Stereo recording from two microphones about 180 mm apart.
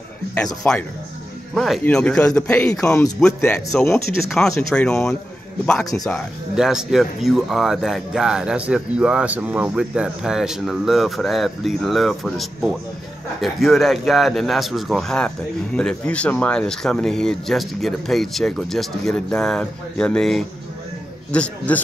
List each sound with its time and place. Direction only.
0.7 s a man's voice: 10° left (ahead or behind)